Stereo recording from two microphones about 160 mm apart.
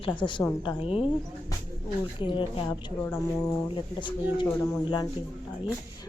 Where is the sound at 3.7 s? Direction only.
30° left (ahead or behind).